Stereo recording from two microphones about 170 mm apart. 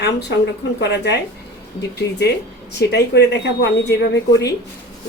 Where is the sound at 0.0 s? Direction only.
80° left.